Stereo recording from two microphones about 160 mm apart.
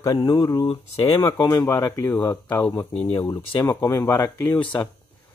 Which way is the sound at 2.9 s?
35° left (ahead or behind).